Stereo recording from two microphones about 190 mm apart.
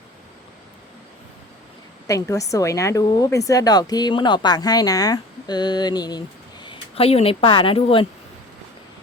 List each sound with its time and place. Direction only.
2.0 s a woman's voice: 15° left (ahead or behind)